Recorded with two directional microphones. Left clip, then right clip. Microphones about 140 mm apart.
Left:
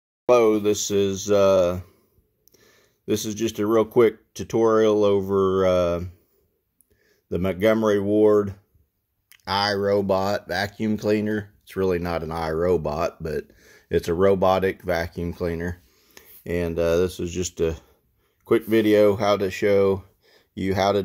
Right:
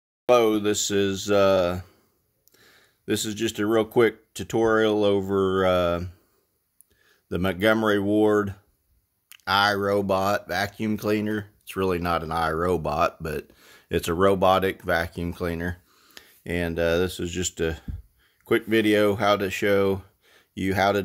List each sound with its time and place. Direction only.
0.3 s speech: 20° right (ahead or behind)
16.4 s speech: 20° right (ahead or behind)